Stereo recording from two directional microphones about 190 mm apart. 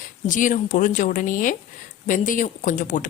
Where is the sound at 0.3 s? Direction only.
45° left (ahead or behind).